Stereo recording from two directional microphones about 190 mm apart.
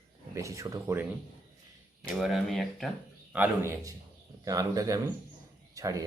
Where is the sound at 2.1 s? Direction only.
Centre (ahead or behind).